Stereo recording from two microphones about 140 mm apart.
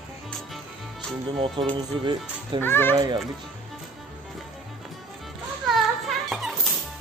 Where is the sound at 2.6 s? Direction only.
15° left (ahead or behind).